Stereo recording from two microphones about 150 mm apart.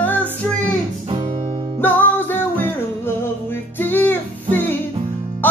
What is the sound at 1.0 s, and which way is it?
Music, 40° right (ahead or behind).